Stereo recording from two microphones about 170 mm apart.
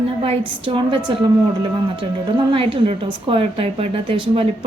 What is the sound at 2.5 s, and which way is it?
Speech, 30° right (ahead or behind).